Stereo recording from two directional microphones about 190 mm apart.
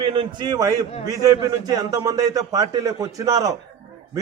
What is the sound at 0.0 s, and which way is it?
A man's voice, 25° right (ahead or behind).